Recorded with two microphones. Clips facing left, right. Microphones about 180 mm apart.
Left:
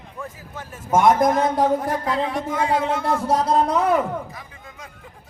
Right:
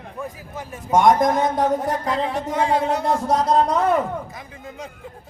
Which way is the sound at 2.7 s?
35° right (ahead or behind).